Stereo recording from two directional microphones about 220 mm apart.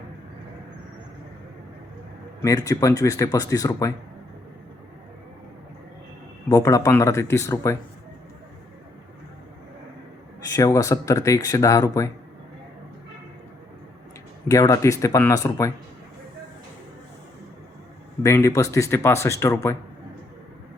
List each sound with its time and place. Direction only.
2.4 s speech: 15° left (ahead or behind)
6.5 s speech: 15° left (ahead or behind)
10.5 s speech: 15° left (ahead or behind)
14.4 s speech: 15° left (ahead or behind)
18.2 s speech: 15° left (ahead or behind)